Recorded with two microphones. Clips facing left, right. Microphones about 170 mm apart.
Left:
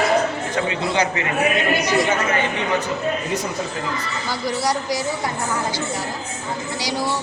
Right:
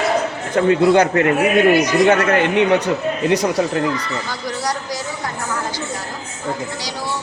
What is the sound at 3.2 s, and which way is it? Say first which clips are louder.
Speech: right 8 dB; 75° right (ahead or behind).